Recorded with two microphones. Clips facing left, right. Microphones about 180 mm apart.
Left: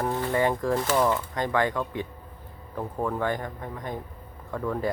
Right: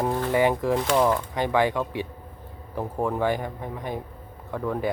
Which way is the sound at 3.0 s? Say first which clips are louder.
Right 3 dB; 10° right (ahead or behind).